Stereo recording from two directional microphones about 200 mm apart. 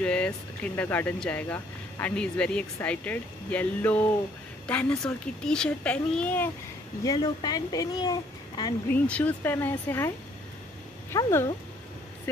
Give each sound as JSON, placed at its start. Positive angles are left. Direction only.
{"t": 0.0, "sound": "a child's voice", "side_deg": 5}
{"t": 7.1, "sound": "speech", "side_deg": 20}
{"t": 8.9, "sound": "speech", "side_deg": 5}